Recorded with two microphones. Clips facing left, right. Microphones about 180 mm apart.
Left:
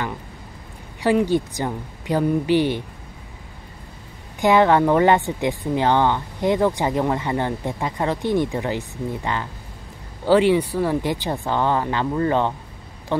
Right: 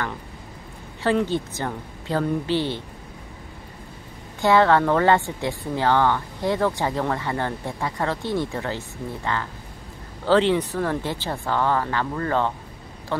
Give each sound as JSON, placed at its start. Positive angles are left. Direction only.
{"t": 1.0, "sound": "a woman's voice", "side_deg": 15}
{"t": 4.4, "sound": "a woman's voice", "side_deg": 15}